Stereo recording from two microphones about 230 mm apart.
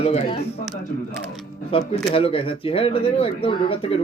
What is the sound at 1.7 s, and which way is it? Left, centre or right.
A man's voice, left.